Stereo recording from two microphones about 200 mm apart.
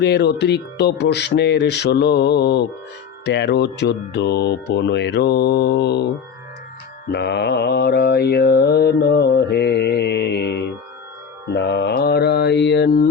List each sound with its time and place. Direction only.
0.0 s mantra: 55° left (ahead or behind)
7.1 s mantra: 60° left (ahead or behind)